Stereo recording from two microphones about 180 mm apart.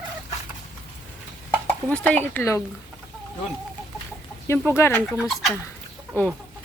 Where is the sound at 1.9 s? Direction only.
10° left (ahead or behind).